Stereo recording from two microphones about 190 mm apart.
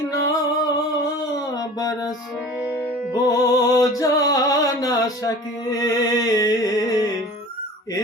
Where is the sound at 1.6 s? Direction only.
20° left (ahead or behind).